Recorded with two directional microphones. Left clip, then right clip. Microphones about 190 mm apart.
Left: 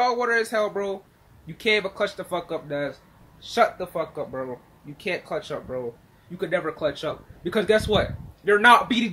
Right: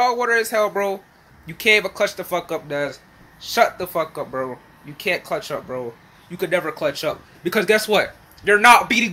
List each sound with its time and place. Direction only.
0.0 s speech: centre (ahead or behind)